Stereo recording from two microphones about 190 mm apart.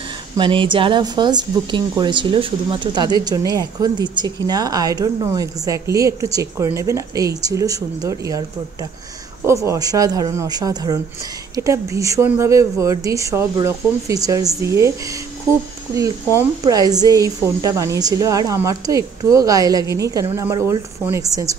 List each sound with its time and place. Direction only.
0.4 s speech: 25° right (ahead or behind)
9.7 s speech: 20° right (ahead or behind)